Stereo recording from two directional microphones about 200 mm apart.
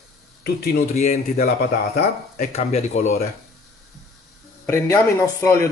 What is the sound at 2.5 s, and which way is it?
Speech, 35° left (ahead or behind).